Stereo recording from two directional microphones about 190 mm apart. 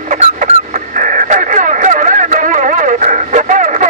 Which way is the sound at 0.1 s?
40° right (ahead or behind).